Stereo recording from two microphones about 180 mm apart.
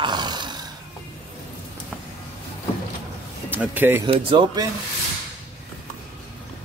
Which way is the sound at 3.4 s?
10° right (ahead or behind).